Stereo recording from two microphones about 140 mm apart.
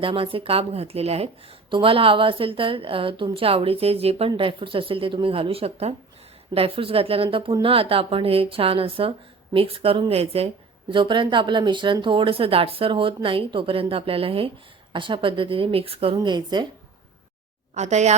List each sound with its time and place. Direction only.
0.0 s a woman's voice: 40° right (ahead or behind)
16.1 s speech: 30° right (ahead or behind)
17.7 s a woman's voice: 55° right (ahead or behind)